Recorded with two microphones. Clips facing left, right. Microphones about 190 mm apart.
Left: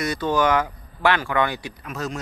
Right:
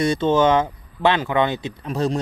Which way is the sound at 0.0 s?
25° right (ahead or behind).